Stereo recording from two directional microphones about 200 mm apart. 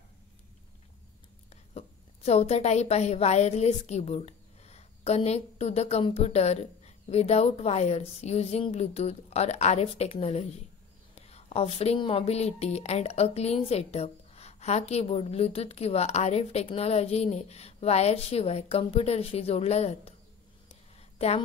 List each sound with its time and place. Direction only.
1.5 s a woman's voice: 30° left (ahead or behind)